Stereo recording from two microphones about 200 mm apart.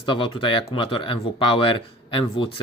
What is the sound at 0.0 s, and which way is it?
Speech, 25° left (ahead or behind).